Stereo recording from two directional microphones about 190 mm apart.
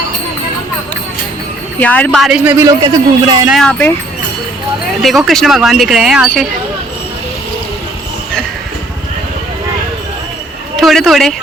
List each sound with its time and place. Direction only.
1.8 s speech: 5° left (ahead or behind)
2.6 s a man's voice: 20° right (ahead or behind)
3.5 s speech: 5° left (ahead or behind)
5.0 s speech: centre (ahead or behind)
10.8 s speech: centre (ahead or behind)